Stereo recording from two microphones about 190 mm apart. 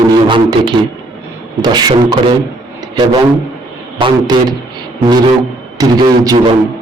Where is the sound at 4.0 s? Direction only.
25° right (ahead or behind).